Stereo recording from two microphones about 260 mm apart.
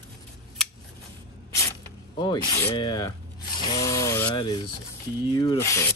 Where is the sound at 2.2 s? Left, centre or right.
Centre.